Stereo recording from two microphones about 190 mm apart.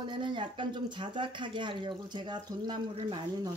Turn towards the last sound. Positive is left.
turn(degrees=-25)  # may be behind; listen again after turning